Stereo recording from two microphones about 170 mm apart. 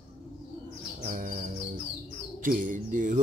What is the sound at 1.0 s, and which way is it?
Speech, 50° right (ahead or behind).